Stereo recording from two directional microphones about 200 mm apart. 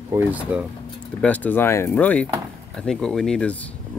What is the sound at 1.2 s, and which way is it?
Speech, 10° left (ahead or behind).